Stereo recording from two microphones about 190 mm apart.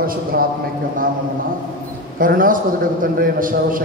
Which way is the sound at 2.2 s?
45° right (ahead or behind).